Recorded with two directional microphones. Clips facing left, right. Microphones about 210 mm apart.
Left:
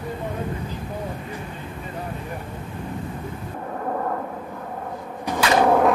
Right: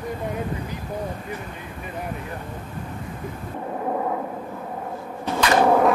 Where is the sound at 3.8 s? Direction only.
10° right (ahead or behind).